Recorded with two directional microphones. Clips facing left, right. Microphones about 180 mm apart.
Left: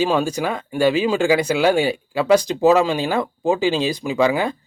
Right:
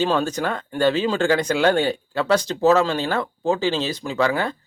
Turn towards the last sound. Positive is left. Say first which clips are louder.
# left 3 dB
turn(degrees=10)  # may be behind; listen again after turning